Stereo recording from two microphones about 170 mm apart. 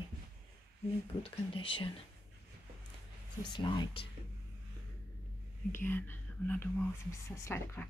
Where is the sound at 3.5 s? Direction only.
30° left (ahead or behind).